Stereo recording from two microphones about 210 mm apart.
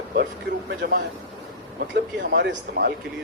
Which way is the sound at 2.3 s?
50° right (ahead or behind).